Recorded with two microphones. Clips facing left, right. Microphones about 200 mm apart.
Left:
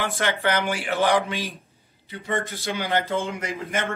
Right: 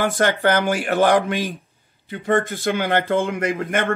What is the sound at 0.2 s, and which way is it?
A man's voice, 45° right (ahead or behind).